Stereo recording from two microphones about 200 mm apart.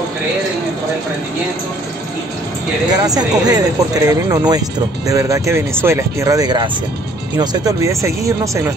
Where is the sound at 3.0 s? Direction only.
20° right (ahead or behind).